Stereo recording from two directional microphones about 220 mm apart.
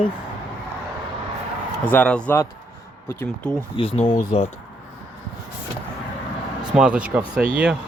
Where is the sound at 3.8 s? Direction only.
25° left (ahead or behind).